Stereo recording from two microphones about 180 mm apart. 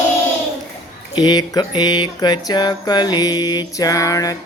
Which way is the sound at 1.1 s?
25° left (ahead or behind).